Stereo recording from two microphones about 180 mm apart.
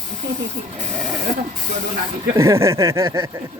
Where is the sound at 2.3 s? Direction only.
15° right (ahead or behind).